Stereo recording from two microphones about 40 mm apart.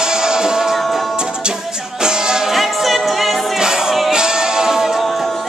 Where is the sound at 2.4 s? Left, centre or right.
Centre.